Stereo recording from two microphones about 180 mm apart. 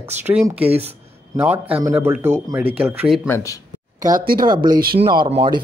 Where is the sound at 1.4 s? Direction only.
10° right (ahead or behind).